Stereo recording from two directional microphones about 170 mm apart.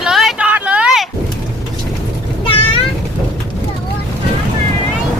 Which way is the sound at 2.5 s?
30° left (ahead or behind).